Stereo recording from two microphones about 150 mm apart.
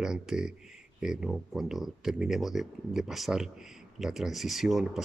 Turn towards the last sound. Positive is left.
turn(degrees=0)  # may be behind; listen again after turning